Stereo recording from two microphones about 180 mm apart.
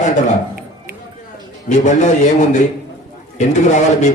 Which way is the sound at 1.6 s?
45° left (ahead or behind).